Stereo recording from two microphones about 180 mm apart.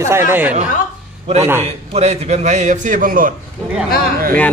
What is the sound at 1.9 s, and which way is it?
A man's voice, 40° right (ahead or behind).